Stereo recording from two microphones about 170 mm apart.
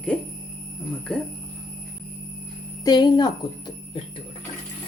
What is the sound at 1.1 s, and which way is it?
Speech, 5° left (ahead or behind).